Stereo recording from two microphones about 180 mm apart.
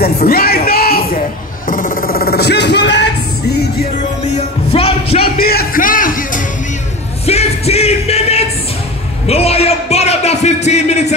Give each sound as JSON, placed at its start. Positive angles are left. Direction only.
{"t": 0.0, "sound": "music", "side_deg": 60}
{"t": 1.7, "sound": "a sound", "side_deg": 50}
{"t": 4.2, "sound": "music", "side_deg": 35}
{"t": 5.4, "sound": "music", "side_deg": 55}
{"t": 7.2, "sound": "music", "side_deg": 35}